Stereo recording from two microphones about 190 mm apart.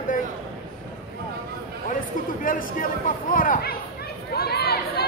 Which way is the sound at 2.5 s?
45° left (ahead or behind).